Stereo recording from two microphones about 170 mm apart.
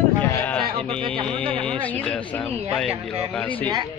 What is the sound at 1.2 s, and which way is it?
Speech, 5° left (ahead or behind).